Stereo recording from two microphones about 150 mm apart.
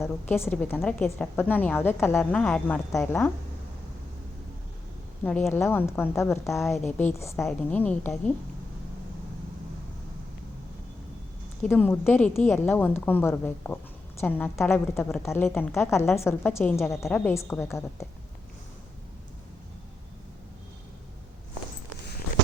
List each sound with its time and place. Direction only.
0.0 s a woman's voice: 15° left (ahead or behind)
5.2 s a woman's voice: 5° left (ahead or behind)
6.6 s a woman's voice: centre (ahead or behind)
6.9 s a woman's voice: 15° left (ahead or behind)
11.6 s a woman's voice: 10° left (ahead or behind)